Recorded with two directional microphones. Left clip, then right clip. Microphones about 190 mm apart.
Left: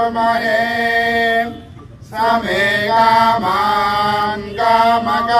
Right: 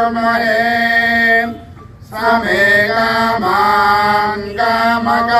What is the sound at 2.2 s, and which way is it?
Mantra, 15° left (ahead or behind).